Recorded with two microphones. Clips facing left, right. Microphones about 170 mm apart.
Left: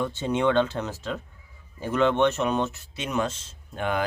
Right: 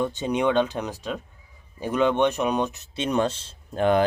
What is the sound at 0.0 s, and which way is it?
Speech, 15° right (ahead or behind).